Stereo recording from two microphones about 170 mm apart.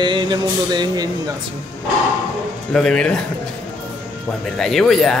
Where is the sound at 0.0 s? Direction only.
25° right (ahead or behind).